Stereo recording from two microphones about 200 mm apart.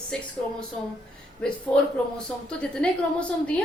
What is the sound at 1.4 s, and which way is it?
A woman's voice, 5° left (ahead or behind).